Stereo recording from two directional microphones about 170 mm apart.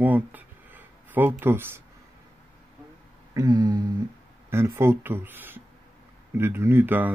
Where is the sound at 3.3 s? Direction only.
20° right (ahead or behind).